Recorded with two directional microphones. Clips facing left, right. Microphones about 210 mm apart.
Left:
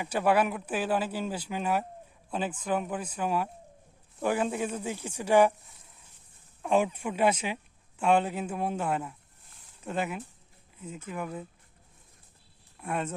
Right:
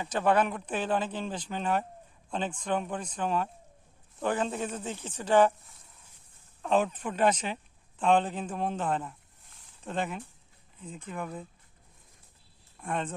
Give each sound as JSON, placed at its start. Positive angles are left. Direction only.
{"t": 0.0, "sound": "speech", "side_deg": 10}
{"t": 6.6, "sound": "speech", "side_deg": 10}
{"t": 12.8, "sound": "speech", "side_deg": 10}